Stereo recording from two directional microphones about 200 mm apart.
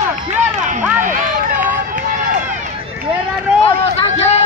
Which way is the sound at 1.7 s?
40° right (ahead or behind).